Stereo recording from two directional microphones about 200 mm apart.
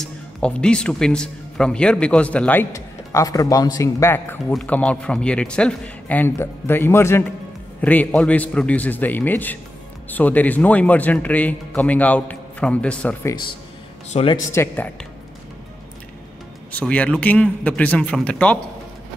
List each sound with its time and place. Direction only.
0.0 s speech: 5° left (ahead or behind)
14.1 s speech: 25° left (ahead or behind)
14.5 s speech: 15° left (ahead or behind)
16.7 s speech: 5° left (ahead or behind)